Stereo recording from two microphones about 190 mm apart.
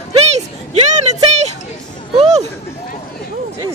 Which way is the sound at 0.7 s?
35° right (ahead or behind).